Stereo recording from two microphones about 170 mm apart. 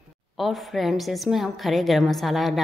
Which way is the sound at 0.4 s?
Centre (ahead or behind).